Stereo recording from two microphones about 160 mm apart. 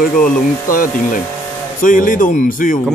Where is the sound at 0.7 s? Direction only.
60° left (ahead or behind).